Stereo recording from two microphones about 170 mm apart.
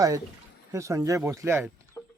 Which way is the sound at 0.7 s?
20° right (ahead or behind).